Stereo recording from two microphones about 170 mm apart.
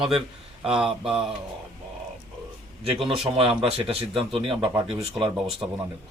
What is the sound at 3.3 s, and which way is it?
Speech, 35° right (ahead or behind).